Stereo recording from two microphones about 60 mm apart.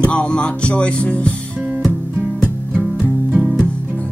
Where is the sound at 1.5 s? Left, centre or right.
Right.